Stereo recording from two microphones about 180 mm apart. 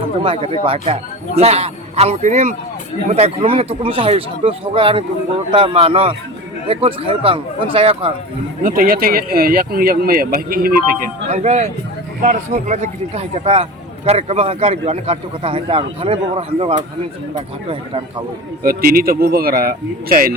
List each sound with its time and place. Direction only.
0.2 s a man's voice: 30° right (ahead or behind)
8.6 s speech: 55° right (ahead or behind)
11.3 s a man's voice: 40° right (ahead or behind)
18.6 s speech: 55° right (ahead or behind)